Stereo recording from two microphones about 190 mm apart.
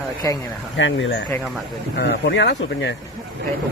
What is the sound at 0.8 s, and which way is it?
Speech, 80° left.